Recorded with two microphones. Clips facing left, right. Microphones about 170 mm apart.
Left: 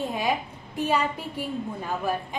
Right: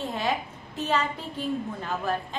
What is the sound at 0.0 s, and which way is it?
A woman's voice, 10° left (ahead or behind).